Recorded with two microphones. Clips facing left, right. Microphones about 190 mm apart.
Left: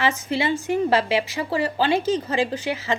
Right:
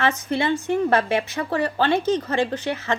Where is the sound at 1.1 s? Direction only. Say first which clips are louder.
Even; 55° right (ahead or behind).